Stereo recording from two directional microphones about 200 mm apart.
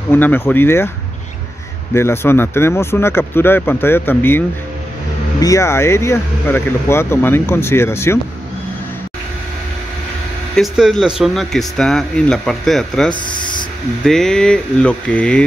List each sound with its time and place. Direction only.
0.1 s speech: 10° left (ahead or behind)
2.0 s speech: 10° left (ahead or behind)
10.5 s speech: centre (ahead or behind)
13.1 s speech: 25° left (ahead or behind)
14.0 s speech: centre (ahead or behind)